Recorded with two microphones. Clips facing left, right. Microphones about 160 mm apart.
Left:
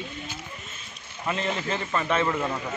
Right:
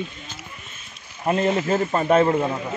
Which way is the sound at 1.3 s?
45° right (ahead or behind).